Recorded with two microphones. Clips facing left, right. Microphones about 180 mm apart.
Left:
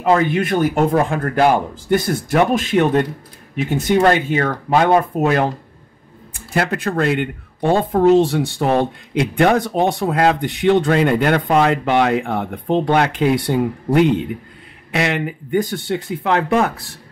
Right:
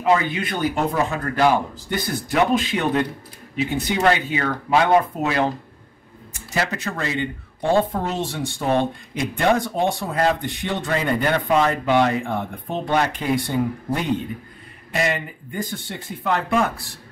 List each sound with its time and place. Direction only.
0.0 s speech: 50° left (ahead or behind); by 16.7 s 65° left (ahead or behind)